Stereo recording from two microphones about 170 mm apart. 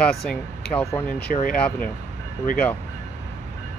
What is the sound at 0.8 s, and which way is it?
Speech, 15° left (ahead or behind).